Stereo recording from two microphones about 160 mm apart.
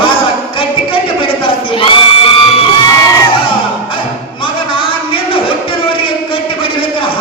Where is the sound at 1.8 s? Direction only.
35° left (ahead or behind).